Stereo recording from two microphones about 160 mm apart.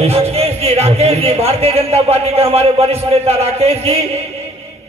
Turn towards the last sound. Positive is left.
turn(degrees=-40)  # may be behind; listen again after turning